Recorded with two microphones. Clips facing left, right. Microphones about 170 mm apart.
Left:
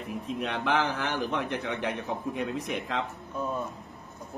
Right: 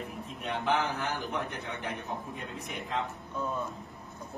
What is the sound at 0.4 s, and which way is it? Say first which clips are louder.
A man's voice: left 2 dB; 90° left.